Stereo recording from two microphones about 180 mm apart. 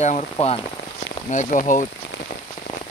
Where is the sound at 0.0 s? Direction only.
35° left (ahead or behind).